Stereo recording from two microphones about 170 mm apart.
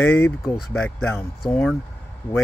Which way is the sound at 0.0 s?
10° left (ahead or behind).